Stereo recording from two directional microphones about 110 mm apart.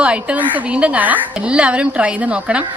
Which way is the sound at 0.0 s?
10° right (ahead or behind).